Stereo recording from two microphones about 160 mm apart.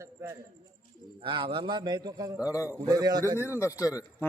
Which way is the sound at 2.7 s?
20° right (ahead or behind).